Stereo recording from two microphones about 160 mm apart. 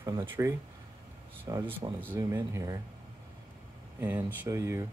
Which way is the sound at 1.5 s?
20° right (ahead or behind).